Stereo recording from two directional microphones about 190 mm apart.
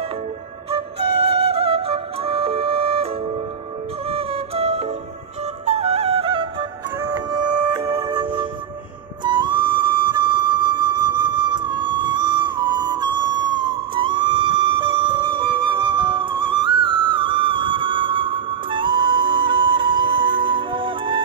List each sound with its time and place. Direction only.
0.7 s music: 30° right (ahead or behind)
4.1 s music: 30° right (ahead or behind)
9.2 s flute: 25° right (ahead or behind)